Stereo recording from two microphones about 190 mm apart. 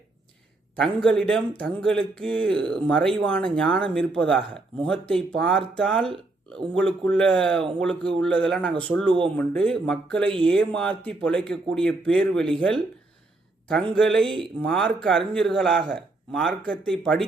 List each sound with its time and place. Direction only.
0.8 s speech: centre (ahead or behind)
13.9 s speech: 5° left (ahead or behind)